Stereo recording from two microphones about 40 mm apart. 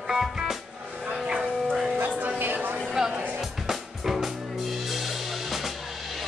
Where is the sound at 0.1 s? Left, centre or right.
Centre.